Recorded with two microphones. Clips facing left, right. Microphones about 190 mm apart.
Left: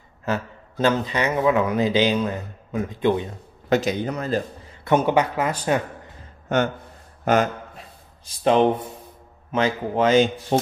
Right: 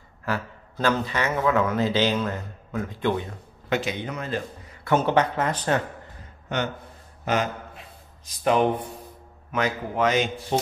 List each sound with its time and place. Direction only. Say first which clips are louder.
0.2 s a man's voice: left 3 dB; 20° left (ahead or behind)
3.6 s a man's voice: left 6 dB; 40° left (ahead or behind)
4.8 s a man's voice: left 2 dB; 15° left (ahead or behind)
6.5 s a man's voice: left 6 dB; 50° left (ahead or behind)
9.5 s a man's voice: left 4 dB; 30° left (ahead or behind)